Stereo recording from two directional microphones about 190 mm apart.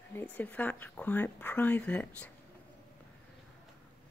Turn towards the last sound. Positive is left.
turn(degrees=10)  # may be behind; listen again after turning